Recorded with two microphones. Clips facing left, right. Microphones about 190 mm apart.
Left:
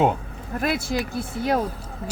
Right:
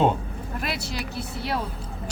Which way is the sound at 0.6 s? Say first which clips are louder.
Left 8 dB; 50° left (ahead or behind).